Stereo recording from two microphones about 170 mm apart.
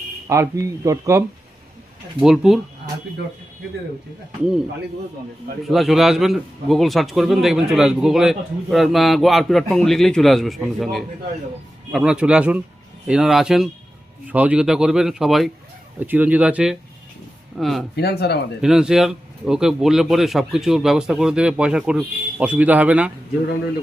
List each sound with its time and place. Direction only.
0.3 s speech: 20° right (ahead or behind)
2.2 s speech: centre (ahead or behind)
5.6 s speech: centre (ahead or behind)
17.9 s speech: 70° left (ahead or behind)
18.6 s speech: 5° right (ahead or behind)